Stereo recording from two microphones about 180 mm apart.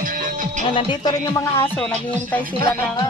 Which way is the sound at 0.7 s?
25° left (ahead or behind).